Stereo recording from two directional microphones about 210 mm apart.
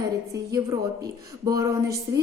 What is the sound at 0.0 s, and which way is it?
A woman's voice, 15° right (ahead or behind).